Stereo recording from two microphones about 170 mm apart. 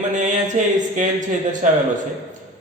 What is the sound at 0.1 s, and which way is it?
Speech, 45° right (ahead or behind).